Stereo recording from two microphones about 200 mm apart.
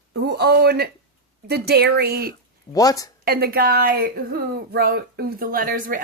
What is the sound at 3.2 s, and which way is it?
Speech, 50° right (ahead or behind).